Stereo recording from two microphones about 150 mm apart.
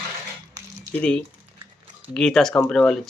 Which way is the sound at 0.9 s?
10° left (ahead or behind).